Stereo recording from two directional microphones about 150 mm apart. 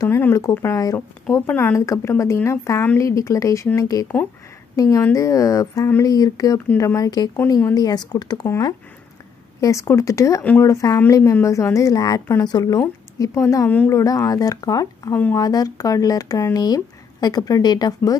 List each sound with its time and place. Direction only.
0.0 s speech: 15° left (ahead or behind)